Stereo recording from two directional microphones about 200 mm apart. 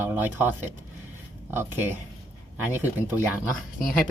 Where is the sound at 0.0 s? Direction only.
10° right (ahead or behind).